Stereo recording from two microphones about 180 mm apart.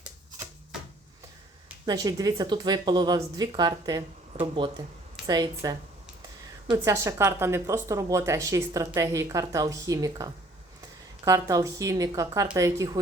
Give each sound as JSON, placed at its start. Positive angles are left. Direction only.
{"t": 1.9, "sound": "speech", "side_deg": -20}